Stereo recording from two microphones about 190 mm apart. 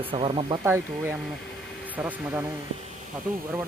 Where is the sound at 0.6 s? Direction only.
15° right (ahead or behind).